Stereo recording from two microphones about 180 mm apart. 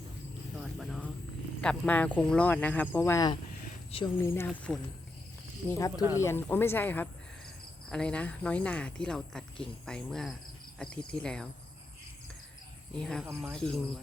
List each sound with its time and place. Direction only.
0.5 s a sound: centre (ahead or behind)
1.6 s speech: 5° left (ahead or behind)
3.9 s speech: 30° left (ahead or behind)
4.3 s speech: 15° left (ahead or behind)
5.7 s speech: 20° left (ahead or behind)
13.0 s speech: 5° left (ahead or behind)